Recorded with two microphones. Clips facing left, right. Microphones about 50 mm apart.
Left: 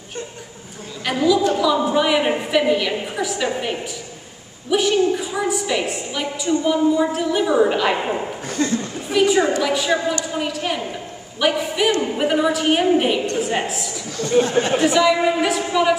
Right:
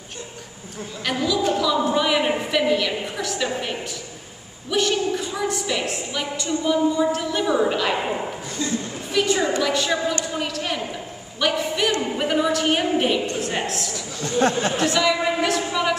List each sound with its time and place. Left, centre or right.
1.0 s a woman's voice: centre
4.6 s a woman's voice: centre
8.6 s speech: left
9.1 s a woman's voice: centre
14.5 s speech: left
14.8 s a woman's voice: centre